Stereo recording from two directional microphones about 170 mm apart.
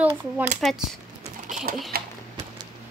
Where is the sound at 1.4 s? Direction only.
45° right (ahead or behind).